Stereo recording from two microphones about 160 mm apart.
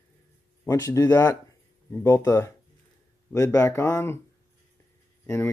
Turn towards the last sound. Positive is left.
turn(degrees=15)  # may be behind; listen again after turning